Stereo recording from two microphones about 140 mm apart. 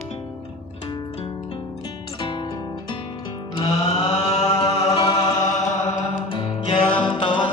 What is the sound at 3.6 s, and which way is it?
Music, 30° left (ahead or behind).